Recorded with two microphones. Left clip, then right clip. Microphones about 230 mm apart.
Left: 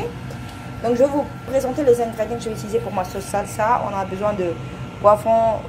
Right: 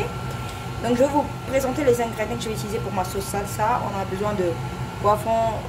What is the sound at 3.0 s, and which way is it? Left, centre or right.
Speech, centre.